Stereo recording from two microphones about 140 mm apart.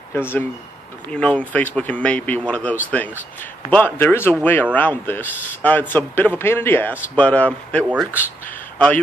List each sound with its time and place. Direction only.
0.1 s a man's voice: 15° left (ahead or behind)